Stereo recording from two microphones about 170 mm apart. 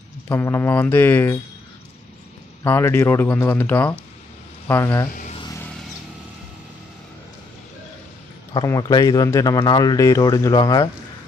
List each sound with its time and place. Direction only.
0.3 s speech: 15° left (ahead or behind)
2.6 s speech: 15° left (ahead or behind)
8.6 s speech: 20° left (ahead or behind)